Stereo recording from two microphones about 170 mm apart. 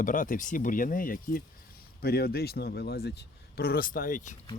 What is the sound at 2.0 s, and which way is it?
A man's voice, 65° left (ahead or behind).